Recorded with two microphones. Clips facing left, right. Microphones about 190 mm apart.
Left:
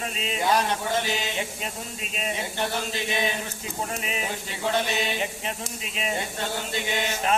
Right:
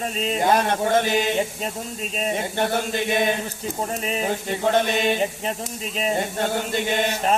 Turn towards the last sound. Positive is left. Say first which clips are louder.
# right 4 dB
turn(degrees=-45)  # may be behind; listen again after turning